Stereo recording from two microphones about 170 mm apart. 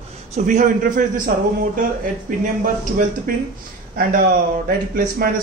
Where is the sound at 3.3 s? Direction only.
55° right (ahead or behind).